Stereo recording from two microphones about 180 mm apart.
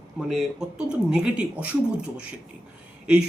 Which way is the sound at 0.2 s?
Centre (ahead or behind).